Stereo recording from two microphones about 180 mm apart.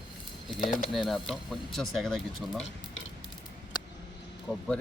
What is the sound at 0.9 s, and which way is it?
Speech, centre (ahead or behind).